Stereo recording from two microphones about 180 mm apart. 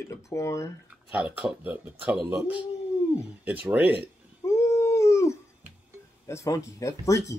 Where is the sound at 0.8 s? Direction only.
5° right (ahead or behind).